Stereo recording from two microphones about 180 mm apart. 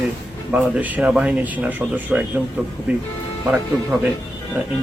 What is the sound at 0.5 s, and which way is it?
Speech, 10° right (ahead or behind).